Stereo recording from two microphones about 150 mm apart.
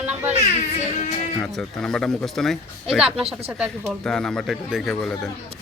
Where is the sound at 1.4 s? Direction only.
5° left (ahead or behind).